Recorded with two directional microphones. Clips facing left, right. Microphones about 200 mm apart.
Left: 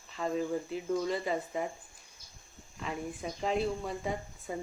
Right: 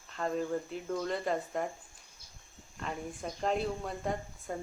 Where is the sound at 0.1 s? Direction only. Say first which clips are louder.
Left 1 dB; 5° left (ahead or behind).